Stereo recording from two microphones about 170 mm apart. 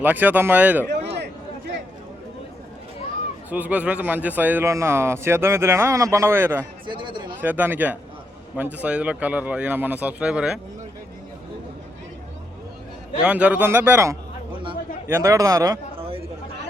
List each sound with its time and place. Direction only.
0.0 s a man's voice: 10° right (ahead or behind)
3.5 s a man's voice: 10° right (ahead or behind)
6.8 s speech: 30° right (ahead or behind)
7.4 s a man's voice: 10° right (ahead or behind)
13.2 s a man's voice: 10° right (ahead or behind)
16.0 s chatter: 35° right (ahead or behind)